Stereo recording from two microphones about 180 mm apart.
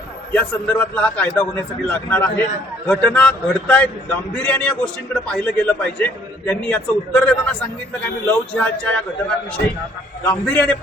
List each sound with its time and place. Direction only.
0.3 s a man's voice: 10° left (ahead or behind)
10.2 s a man's voice: 10° left (ahead or behind)